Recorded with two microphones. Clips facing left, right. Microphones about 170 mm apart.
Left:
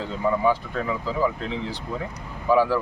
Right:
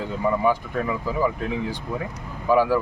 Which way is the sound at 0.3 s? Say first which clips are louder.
Even; 5° right (ahead or behind).